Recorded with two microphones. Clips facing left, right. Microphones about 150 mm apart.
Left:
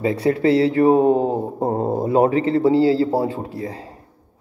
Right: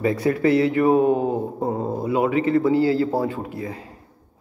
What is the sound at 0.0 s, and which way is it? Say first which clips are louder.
Speech: left 2 dB; 30° left (ahead or behind).